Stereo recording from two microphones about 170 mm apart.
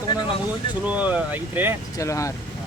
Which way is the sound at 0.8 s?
10° right (ahead or behind).